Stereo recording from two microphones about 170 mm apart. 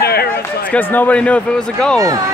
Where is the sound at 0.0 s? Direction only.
65° left (ahead or behind).